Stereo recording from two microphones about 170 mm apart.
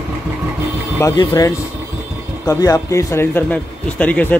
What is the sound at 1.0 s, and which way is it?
A man's voice, 25° left (ahead or behind).